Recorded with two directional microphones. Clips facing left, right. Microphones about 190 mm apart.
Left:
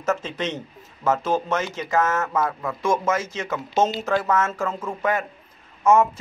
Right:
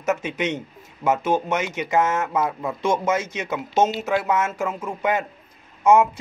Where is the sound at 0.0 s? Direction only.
15° right (ahead or behind).